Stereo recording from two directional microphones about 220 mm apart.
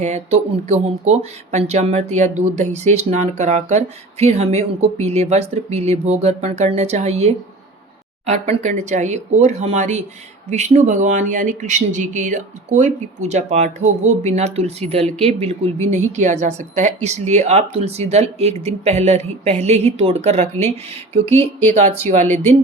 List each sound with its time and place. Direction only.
0.0 s speech: 30° right (ahead or behind)
21.2 s speech: 10° left (ahead or behind)
21.7 s speech: 30° right (ahead or behind)